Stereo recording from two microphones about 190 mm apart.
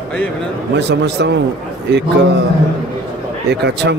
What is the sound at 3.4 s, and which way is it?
Speech, 60° right (ahead or behind).